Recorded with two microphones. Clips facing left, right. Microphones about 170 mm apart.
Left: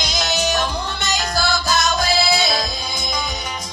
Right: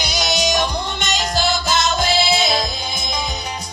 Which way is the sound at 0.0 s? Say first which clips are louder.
Right 1 dB; 10° right (ahead or behind).